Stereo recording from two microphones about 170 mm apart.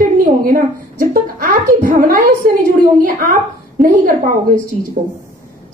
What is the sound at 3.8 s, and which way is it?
Speech, 50° right (ahead or behind).